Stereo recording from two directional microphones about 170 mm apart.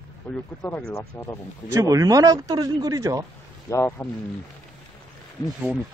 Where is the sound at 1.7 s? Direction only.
20° right (ahead or behind).